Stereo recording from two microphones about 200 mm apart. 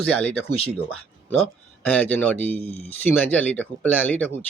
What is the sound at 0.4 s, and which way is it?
Speech, 30° left (ahead or behind).